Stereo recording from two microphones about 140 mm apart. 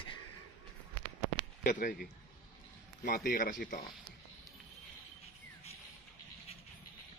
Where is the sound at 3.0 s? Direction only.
90° left; by 3.8 s 70° left (ahead or behind).